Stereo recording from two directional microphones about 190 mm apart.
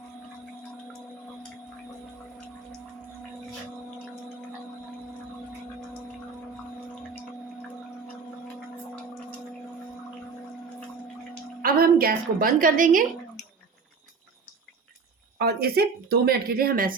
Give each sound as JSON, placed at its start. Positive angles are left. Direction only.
{"t": 11.6, "sound": "a woman's voice", "side_deg": -50}
{"t": 15.4, "sound": "speech", "side_deg": -55}